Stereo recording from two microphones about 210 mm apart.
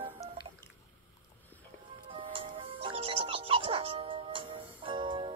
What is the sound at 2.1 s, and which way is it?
Music, 25° right (ahead or behind).